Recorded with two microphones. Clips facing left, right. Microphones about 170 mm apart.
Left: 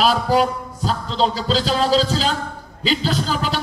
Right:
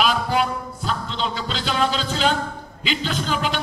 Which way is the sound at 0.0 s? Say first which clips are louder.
Left 4 dB; 35° left (ahead or behind).